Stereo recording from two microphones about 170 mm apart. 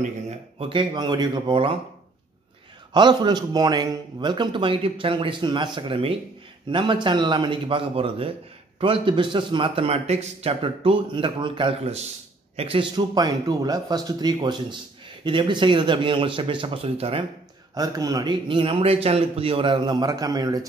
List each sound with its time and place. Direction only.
0.6 s a man's voice: 30° right (ahead or behind)
2.9 s a man's voice: 25° right (ahead or behind)
17.7 s a man's voice: 20° right (ahead or behind)